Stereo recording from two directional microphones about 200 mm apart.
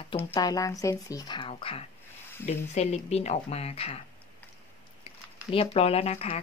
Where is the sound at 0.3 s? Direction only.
20° left (ahead or behind).